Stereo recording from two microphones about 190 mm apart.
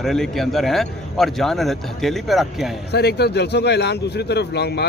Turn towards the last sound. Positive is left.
turn(degrees=60)  # may be behind; listen again after turning